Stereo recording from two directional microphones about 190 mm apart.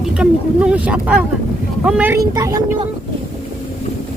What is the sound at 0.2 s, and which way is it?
Speech, 5° right (ahead or behind).